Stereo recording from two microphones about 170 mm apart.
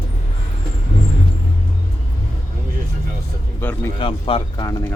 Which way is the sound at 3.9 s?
30° left (ahead or behind).